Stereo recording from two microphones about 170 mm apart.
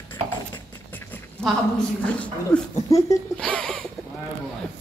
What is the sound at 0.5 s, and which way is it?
Speech, 10° left (ahead or behind).